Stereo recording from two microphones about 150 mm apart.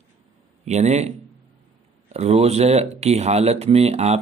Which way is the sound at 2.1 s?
45° right (ahead or behind).